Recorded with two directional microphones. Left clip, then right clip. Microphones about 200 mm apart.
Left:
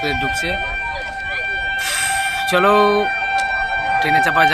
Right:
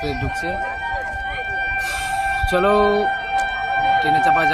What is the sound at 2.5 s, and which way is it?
Speech, centre (ahead or behind).